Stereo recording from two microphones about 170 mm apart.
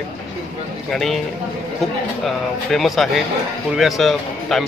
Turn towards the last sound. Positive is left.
turn(degrees=0)  # may be behind; listen again after turning